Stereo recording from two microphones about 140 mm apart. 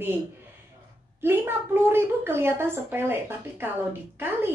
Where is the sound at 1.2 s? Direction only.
15° right (ahead or behind).